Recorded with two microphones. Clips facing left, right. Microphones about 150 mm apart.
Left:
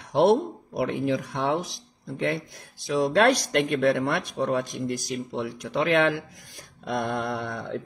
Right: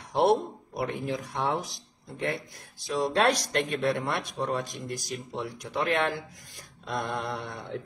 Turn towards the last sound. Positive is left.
turn(degrees=65)  # may be behind; listen again after turning